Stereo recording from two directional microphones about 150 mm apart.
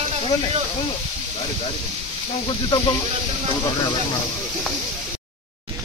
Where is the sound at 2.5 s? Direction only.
30° left (ahead or behind).